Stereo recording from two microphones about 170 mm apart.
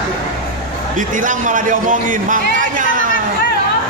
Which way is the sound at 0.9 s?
50° right (ahead or behind).